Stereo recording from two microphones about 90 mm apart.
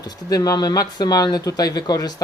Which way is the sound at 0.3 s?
45° left (ahead or behind).